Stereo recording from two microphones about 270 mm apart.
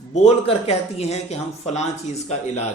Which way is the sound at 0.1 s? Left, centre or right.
Left.